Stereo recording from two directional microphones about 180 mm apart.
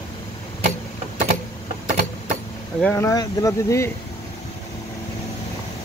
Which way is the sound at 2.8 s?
15° left (ahead or behind).